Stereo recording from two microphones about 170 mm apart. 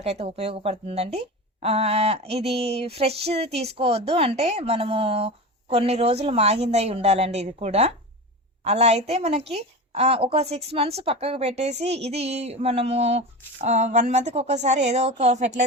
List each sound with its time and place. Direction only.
0.0 s a woman's voice: 35° right (ahead or behind)